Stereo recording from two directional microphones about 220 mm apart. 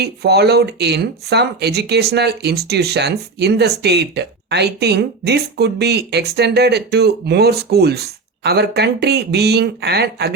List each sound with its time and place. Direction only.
0.0 s speech: 45° right (ahead or behind)